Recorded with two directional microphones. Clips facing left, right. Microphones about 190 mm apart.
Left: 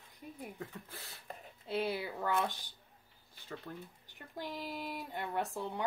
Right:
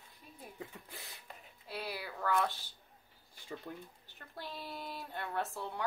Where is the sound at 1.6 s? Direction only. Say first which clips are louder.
Left 7 dB; 25° left (ahead or behind).